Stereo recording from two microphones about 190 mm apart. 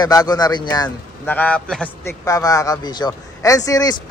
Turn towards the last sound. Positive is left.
turn(degrees=20)  # may be behind; listen again after turning